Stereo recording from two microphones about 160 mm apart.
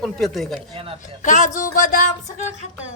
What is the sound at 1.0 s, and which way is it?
A man's voice, 50° left (ahead or behind).